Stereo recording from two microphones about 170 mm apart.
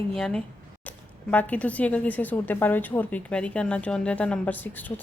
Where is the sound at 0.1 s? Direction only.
5° left (ahead or behind).